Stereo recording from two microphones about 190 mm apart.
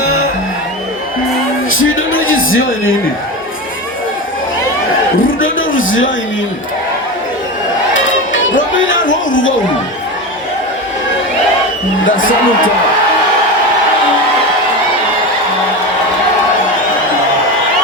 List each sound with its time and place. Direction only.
1.7 s a sound: 90° left
5.4 s a man's voice: 90° left
8.3 s music: 90° left
12.0 s a man's voice: 45° left (ahead or behind)